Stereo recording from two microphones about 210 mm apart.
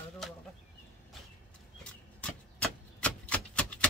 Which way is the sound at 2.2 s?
5° left (ahead or behind).